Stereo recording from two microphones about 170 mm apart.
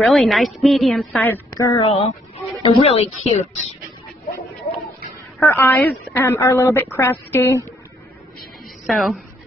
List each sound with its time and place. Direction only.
0.0 s a woman's voice: centre (ahead or behind)
1.5 s speech: 20° left (ahead or behind)
1.8 s speech: 35° left (ahead or behind)
5.4 s speech: 15° left (ahead or behind)
8.8 s speech: centre (ahead or behind)